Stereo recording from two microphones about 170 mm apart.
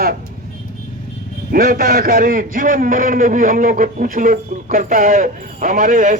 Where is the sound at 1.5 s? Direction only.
55° right (ahead or behind).